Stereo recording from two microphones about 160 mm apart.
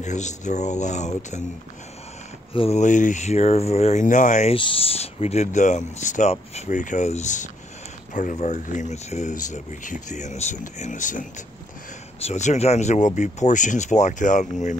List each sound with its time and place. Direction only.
0.0 s speech: 45° left (ahead or behind)
2.5 s speech: 40° left (ahead or behind)
4.6 s speech: 35° left (ahead or behind); by 14.8 s 50° left (ahead or behind)